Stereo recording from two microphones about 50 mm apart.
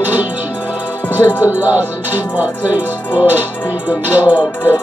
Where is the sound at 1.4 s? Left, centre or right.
Right.